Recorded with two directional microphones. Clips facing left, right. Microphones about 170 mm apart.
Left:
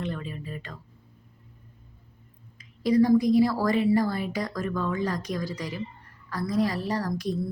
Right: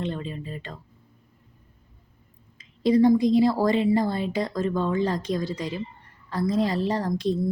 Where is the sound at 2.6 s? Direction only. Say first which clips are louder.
Right 2 dB; 25° right (ahead or behind).